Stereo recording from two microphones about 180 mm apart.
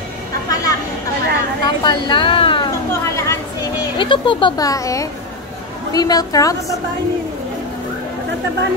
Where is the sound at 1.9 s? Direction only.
25° left (ahead or behind).